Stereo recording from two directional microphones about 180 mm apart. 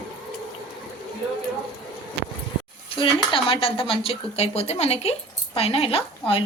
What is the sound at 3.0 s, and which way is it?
Speech, 30° left (ahead or behind).